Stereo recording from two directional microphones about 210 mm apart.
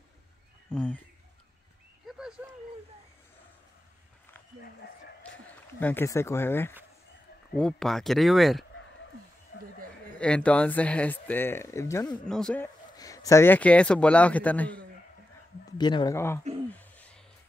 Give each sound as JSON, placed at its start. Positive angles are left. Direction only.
{"t": 2.0, "sound": "a sound", "side_deg": -5}
{"t": 5.8, "sound": "speech", "side_deg": 10}
{"t": 10.1, "sound": "speech", "side_deg": 5}
{"t": 12.3, "sound": "speech", "side_deg": 5}
{"t": 12.9, "sound": "speech", "side_deg": 15}
{"t": 15.8, "sound": "speech", "side_deg": 20}
{"t": 16.7, "sound": "a sound", "side_deg": 5}